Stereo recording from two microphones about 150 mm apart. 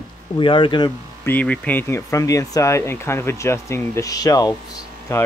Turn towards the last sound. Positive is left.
turn(degrees=15)  # may be behind; listen again after turning